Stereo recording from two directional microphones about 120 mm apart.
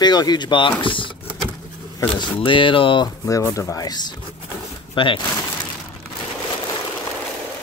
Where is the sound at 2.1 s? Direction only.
45° left (ahead or behind).